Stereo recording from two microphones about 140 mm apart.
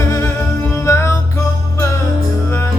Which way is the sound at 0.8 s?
20° left (ahead or behind).